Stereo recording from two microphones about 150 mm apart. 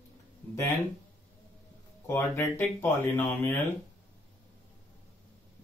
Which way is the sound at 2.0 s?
15° left (ahead or behind).